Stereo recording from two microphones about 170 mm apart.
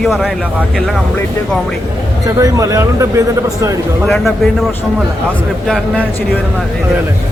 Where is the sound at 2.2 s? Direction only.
20° right (ahead or behind).